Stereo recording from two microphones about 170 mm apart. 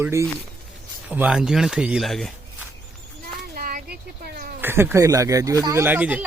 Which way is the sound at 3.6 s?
60° right (ahead or behind).